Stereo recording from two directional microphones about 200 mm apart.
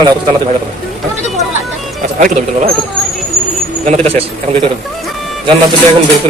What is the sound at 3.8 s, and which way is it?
Speech, 30° right (ahead or behind).